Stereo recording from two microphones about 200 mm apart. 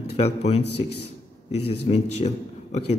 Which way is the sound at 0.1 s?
30° left (ahead or behind).